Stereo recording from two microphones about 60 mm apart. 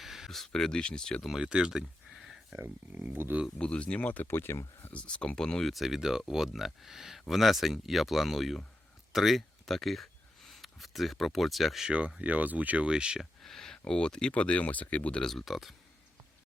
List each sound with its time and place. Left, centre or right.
0.0 s speech: centre
1.4 s a sound: centre
3.1 s speech: right
3.6 s speech: centre; by 4.5 s left
4.9 s speech: centre
5.7 s speech: centre
11.9 s speech: right
13.4 s speech: centre; by 15.2 s left
15.2 s speech: centre